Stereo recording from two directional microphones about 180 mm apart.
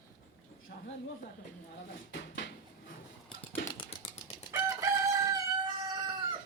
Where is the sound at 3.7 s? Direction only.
30° left (ahead or behind).